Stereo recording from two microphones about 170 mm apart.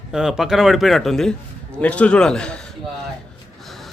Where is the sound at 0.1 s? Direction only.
5° right (ahead or behind).